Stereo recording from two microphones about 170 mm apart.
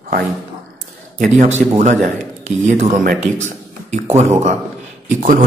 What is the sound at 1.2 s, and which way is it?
A man's voice, 45° right (ahead or behind).